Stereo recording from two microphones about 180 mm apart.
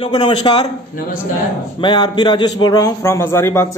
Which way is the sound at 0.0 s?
25° left (ahead or behind).